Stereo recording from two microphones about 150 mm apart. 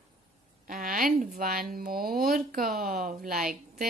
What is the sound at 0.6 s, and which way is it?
Speech, 65° right (ahead or behind).